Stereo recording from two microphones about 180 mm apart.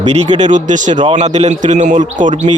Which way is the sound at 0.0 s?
40° right (ahead or behind).